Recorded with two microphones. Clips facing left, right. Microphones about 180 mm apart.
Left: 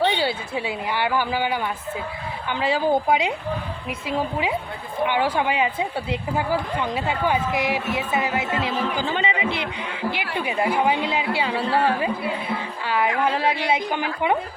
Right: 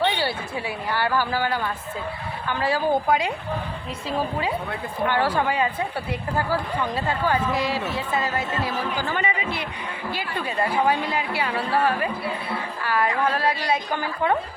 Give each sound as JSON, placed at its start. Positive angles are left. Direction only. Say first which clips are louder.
{"t": 0.0, "sound": "a woman's voice", "louder": "left 2 dB", "side_deg": 20}
{"t": 5.0, "sound": "a woman's voice", "louder": "even", "side_deg": 15}
{"t": 12.8, "sound": "a woman's voice", "louder": "left 1 dB", "side_deg": 20}